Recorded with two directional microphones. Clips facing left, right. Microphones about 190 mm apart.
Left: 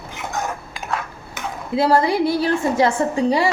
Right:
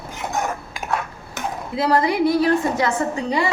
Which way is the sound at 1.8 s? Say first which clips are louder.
Left 1 dB; 30° left (ahead or behind).